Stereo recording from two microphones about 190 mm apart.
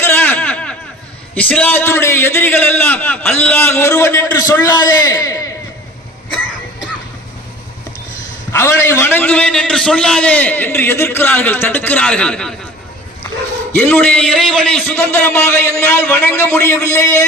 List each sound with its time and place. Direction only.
0.0 s a sound: 10° left (ahead or behind)
1.4 s a man's voice: 5° left (ahead or behind)
8.5 s a man's voice: 15° left (ahead or behind)
13.7 s a man's voice: 5° left (ahead or behind)